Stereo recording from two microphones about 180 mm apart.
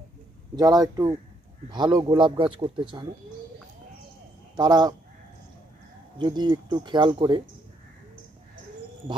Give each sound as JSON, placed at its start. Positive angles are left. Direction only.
{"t": 0.6, "sound": "a man's voice", "side_deg": -20}
{"t": 4.6, "sound": "a man's voice", "side_deg": -25}
{"t": 6.1, "sound": "a man's voice", "side_deg": -25}